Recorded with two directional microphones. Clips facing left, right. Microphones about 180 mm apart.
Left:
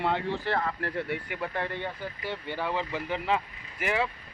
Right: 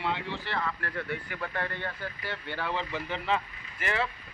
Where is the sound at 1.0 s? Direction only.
25° left (ahead or behind).